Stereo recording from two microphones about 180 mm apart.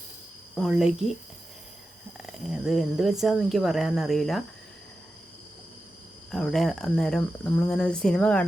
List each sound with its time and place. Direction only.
0.5 s speech: centre (ahead or behind)
2.5 s speech: centre (ahead or behind)
6.3 s speech: centre (ahead or behind)